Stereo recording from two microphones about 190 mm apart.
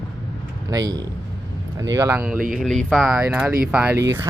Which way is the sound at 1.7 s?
20° right (ahead or behind).